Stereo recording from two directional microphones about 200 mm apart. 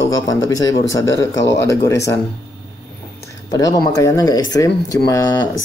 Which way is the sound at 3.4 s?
20° left (ahead or behind).